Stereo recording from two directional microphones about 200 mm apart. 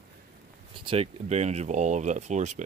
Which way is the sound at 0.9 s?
30° right (ahead or behind).